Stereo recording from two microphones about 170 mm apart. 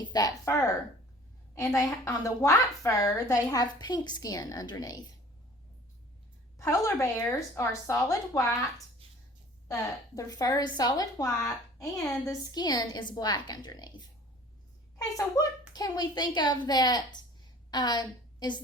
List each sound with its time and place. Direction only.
0.0 s speech: 20° left (ahead or behind)
6.6 s a woman's voice: 15° left (ahead or behind)
14.9 s a woman's voice: 20° left (ahead or behind)